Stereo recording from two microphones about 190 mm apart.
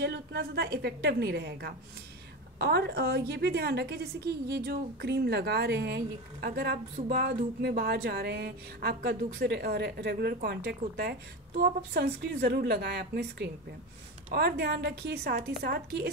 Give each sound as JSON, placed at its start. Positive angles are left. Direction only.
{"t": 0.0, "sound": "a woman's voice", "side_deg": -55}